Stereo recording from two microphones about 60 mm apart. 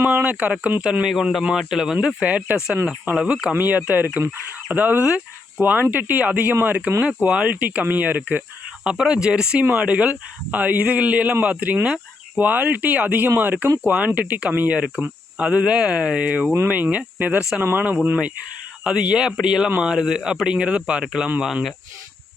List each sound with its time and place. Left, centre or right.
0.1 s speech: right
1.0 s speech: centre
2.2 s a man's voice: right
3.2 s speech: centre
3.5 s a man's voice: right
7.2 s a man's voice: right
8.8 s a man's voice: centre
18.9 s speech: centre